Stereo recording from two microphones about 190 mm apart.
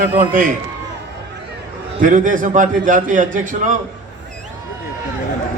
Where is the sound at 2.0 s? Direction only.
45° right (ahead or behind).